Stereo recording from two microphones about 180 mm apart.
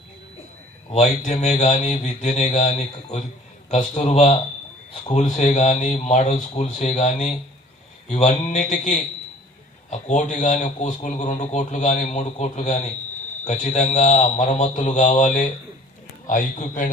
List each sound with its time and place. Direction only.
0.9 s a man's voice: 40° left (ahead or behind)